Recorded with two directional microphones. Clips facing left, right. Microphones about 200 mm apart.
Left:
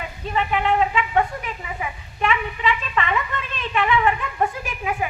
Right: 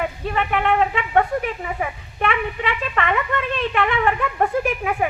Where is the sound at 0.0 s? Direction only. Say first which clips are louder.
Right 3 dB; 60° right (ahead or behind).